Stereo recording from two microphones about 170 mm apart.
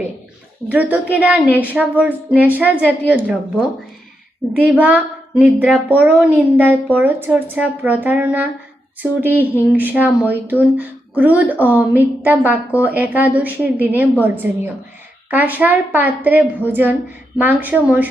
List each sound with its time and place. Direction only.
0.7 s a woman's voice: 10° right (ahead or behind)
4.5 s a woman's voice: 10° right (ahead or behind)